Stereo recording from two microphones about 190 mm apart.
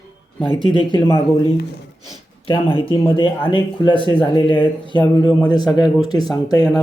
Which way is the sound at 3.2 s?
25° left (ahead or behind).